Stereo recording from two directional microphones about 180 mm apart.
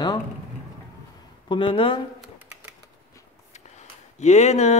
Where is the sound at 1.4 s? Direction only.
30° left (ahead or behind).